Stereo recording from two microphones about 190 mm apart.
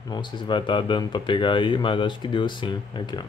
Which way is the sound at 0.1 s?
25° left (ahead or behind).